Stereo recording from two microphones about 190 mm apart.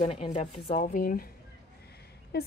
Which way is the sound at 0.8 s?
45° left (ahead or behind).